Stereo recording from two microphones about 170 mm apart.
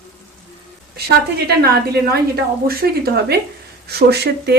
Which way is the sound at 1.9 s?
65° right (ahead or behind).